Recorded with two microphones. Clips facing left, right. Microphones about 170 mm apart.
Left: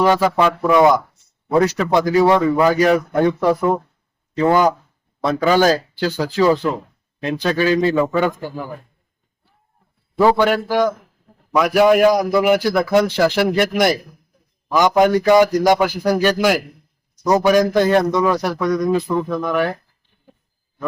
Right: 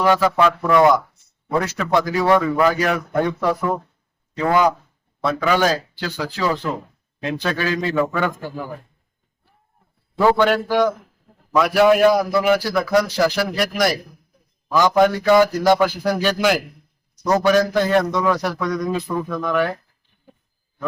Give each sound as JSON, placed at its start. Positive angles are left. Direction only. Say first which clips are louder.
{"t": 0.0, "sound": "speech", "louder": "left 1 dB", "side_deg": 20}
{"t": 4.4, "sound": "speech", "louder": "left 3 dB", "side_deg": 40}
{"t": 10.2, "sound": "a man's voice", "louder": "left 1 dB", "side_deg": 10}
{"t": 19.4, "sound": "a man's voice", "louder": "left 1 dB", "side_deg": 10}